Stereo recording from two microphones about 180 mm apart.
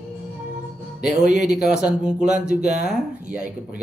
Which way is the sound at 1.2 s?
40° right (ahead or behind).